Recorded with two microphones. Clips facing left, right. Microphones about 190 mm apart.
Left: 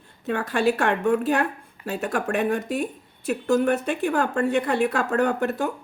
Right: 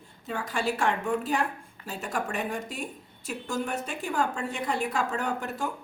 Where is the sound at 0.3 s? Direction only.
65° left (ahead or behind).